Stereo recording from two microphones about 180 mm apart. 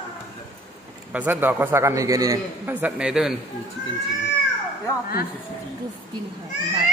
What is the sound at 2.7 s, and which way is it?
Speech, 5° right (ahead or behind).